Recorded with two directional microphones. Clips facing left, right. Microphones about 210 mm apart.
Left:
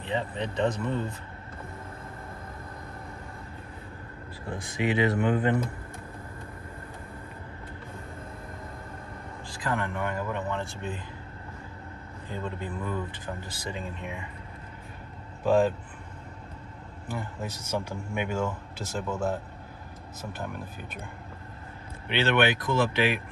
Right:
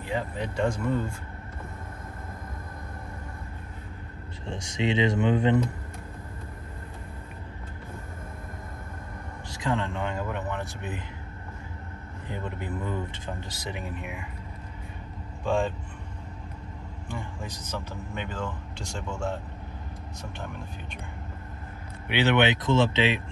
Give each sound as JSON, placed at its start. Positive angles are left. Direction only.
{"t": 0.0, "sound": "speech", "side_deg": -10}
{"t": 4.8, "sound": "speech", "side_deg": -20}
{"t": 9.6, "sound": "speech", "side_deg": -25}
{"t": 12.3, "sound": "speech", "side_deg": -20}
{"t": 15.4, "sound": "speech", "side_deg": 5}
{"t": 17.1, "sound": "speech", "side_deg": 5}
{"t": 22.1, "sound": "speech", "side_deg": -15}